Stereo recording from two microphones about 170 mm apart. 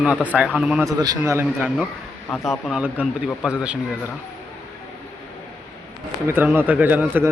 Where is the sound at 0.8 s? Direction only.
20° right (ahead or behind).